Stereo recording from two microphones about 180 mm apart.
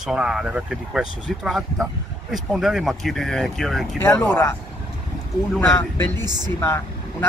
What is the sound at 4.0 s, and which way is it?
Speech, 15° left (ahead or behind).